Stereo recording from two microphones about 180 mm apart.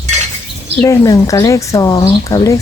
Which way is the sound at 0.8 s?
20° left (ahead or behind).